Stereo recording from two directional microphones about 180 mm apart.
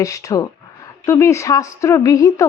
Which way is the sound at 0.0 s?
20° left (ahead or behind).